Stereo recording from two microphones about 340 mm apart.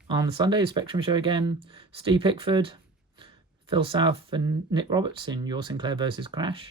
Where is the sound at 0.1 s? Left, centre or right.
Centre.